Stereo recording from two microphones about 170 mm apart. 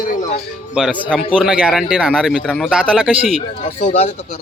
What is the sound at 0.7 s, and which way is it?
Speech, 5° right (ahead or behind).